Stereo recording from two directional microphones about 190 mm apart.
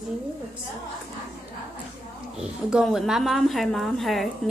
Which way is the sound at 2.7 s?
Centre (ahead or behind).